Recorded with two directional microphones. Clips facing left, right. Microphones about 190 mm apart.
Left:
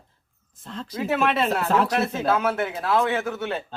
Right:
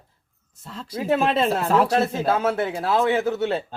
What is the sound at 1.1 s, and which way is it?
A man's voice, 30° right (ahead or behind).